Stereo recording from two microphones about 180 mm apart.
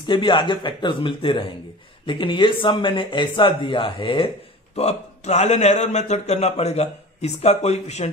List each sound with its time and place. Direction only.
0.0 s a man's voice: 25° left (ahead or behind)